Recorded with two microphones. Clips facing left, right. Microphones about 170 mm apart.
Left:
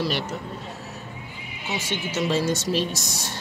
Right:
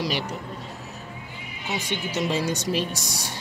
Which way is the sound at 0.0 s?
15° right (ahead or behind).